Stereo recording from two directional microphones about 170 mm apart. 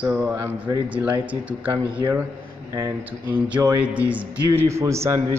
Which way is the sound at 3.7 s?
10° right (ahead or behind).